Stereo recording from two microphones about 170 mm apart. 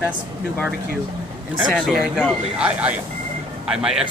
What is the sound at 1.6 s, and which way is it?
Speech, centre (ahead or behind).